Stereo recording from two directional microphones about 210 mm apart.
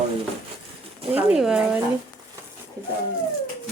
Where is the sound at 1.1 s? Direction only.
5° right (ahead or behind).